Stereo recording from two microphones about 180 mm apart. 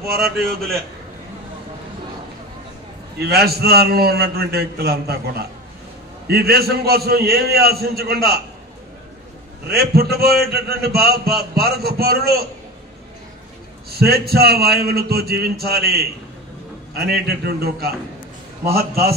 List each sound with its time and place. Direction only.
0.4 s a man's voice: centre (ahead or behind)
3.2 s a man's voice: 60° right (ahead or behind)
9.7 s a man's voice: 60° right (ahead or behind)
13.8 s a man's voice: 60° right (ahead or behind)